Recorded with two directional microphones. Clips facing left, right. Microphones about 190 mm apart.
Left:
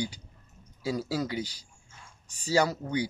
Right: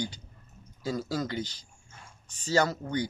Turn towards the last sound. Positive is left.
turn(degrees=10)  # may be behind; listen again after turning